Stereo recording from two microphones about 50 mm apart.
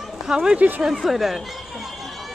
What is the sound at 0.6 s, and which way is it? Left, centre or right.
Speech, right.